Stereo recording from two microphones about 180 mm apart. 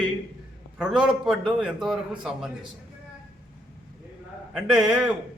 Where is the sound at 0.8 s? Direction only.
5° right (ahead or behind).